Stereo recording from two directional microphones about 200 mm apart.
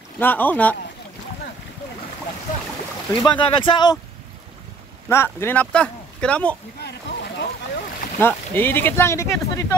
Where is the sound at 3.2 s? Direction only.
25° left (ahead or behind).